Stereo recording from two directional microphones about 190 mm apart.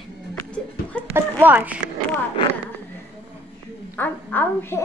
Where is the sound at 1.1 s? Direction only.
10° right (ahead or behind).